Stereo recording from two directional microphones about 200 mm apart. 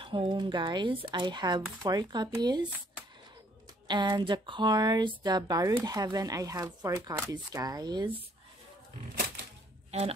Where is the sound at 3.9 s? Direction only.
20° right (ahead or behind).